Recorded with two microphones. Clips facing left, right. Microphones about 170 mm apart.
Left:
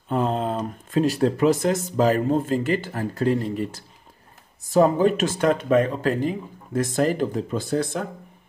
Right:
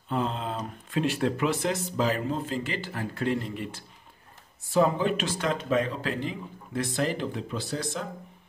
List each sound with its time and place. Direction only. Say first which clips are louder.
0.1 s speech: left 6 dB; 45° left (ahead or behind)